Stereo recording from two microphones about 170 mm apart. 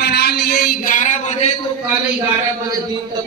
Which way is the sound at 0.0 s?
75° left (ahead or behind).